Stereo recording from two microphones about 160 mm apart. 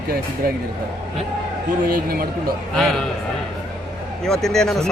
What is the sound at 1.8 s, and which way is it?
Speech, 75° right (ahead or behind).